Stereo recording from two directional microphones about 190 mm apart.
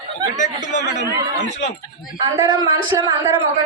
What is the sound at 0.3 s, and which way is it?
Speech, 40° left (ahead or behind).